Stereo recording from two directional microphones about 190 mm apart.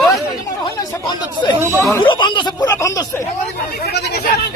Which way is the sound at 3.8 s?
60° left (ahead or behind).